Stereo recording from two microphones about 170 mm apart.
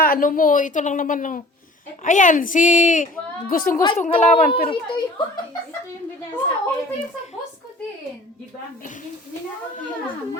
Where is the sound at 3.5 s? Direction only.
55° left (ahead or behind).